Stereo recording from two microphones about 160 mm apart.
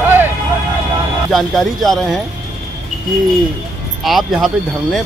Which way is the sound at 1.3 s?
Centre (ahead or behind).